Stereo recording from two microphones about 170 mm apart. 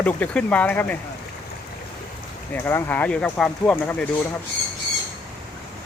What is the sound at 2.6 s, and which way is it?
Speech, 15° left (ahead or behind).